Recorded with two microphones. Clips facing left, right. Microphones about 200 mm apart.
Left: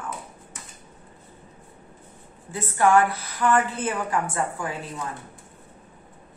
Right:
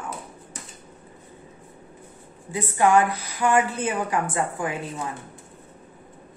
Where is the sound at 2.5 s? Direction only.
15° right (ahead or behind).